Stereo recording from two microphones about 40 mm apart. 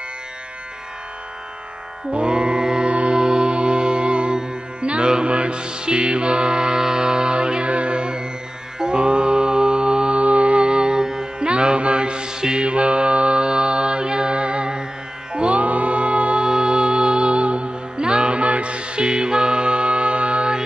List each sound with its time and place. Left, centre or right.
2.1 s music: right
8.7 s mantra: right
10.2 s music: right